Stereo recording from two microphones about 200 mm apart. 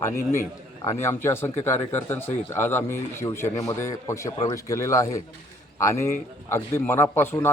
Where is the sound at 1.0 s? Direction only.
10° left (ahead or behind).